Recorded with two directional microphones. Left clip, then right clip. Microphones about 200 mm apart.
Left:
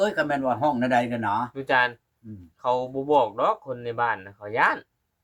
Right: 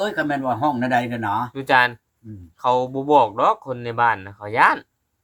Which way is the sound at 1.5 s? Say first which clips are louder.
Right 8 dB; 35° right (ahead or behind).